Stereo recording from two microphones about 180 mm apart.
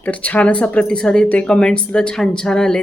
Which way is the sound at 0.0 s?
10° left (ahead or behind).